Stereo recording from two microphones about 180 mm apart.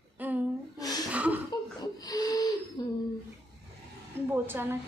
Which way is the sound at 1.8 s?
20° left (ahead or behind).